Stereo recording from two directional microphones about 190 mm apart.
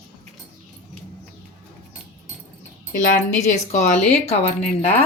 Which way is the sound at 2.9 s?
40° left (ahead or behind).